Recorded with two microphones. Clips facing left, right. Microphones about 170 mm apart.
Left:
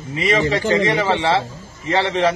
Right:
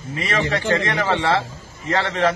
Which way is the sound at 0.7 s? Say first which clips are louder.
Left 3 dB; 15° left (ahead or behind).